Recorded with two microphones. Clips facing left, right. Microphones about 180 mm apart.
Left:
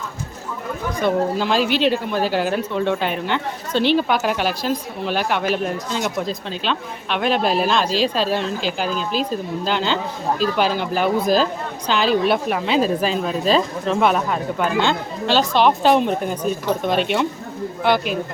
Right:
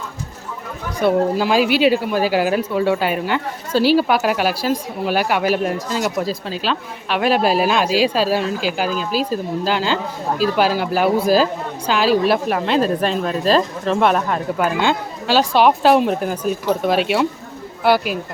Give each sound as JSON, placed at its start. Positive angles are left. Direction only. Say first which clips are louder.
{"t": 1.0, "sound": "a woman's voice", "louder": "right 3 dB", "side_deg": -10}